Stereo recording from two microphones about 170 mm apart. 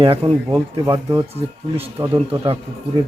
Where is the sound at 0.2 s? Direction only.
35° right (ahead or behind).